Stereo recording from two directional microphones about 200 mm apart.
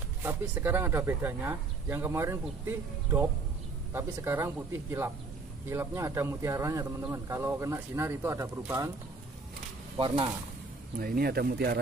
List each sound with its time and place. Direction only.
0.2 s a man's voice: 10° right (ahead or behind)
9.9 s speech: 25° right (ahead or behind)
11.0 s speech: 50° right (ahead or behind)